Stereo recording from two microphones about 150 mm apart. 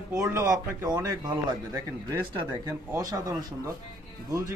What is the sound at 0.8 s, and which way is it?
Speech, 25° right (ahead or behind).